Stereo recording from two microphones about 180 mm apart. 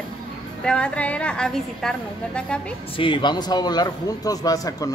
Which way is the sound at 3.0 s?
25° left (ahead or behind).